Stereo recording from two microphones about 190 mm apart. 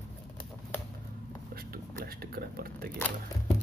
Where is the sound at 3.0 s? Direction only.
10° left (ahead or behind).